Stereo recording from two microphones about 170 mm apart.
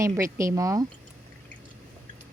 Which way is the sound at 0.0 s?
15° right (ahead or behind).